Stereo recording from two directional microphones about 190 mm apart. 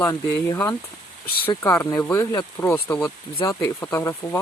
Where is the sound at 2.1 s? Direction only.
15° left (ahead or behind).